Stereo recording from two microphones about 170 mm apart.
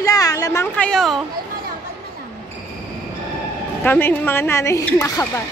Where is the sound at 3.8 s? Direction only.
10° left (ahead or behind).